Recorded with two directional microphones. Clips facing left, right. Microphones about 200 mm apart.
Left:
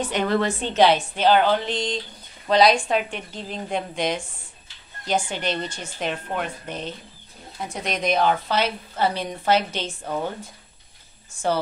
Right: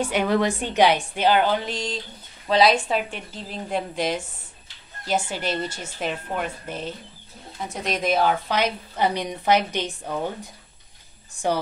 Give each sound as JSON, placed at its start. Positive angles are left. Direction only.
{"t": 0.0, "sound": "a woman's voice", "side_deg": -10}